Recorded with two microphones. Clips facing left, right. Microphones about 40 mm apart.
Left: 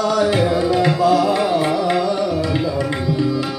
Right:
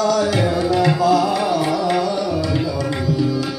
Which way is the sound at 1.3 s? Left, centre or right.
Left.